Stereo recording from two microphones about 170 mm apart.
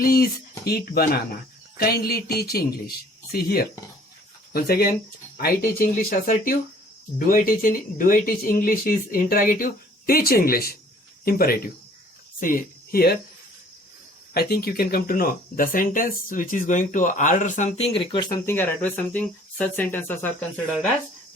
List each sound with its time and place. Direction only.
0.0 s speech: 60° left (ahead or behind)
14.3 s speech: 65° left (ahead or behind); by 18.3 s 30° left (ahead or behind)
18.4 s speech: 10° left (ahead or behind)